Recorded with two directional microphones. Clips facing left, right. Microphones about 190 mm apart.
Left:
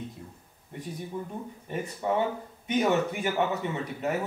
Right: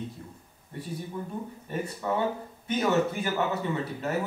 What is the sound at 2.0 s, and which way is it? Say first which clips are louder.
A man's voice: left 2 dB; 20° left (ahead or behind).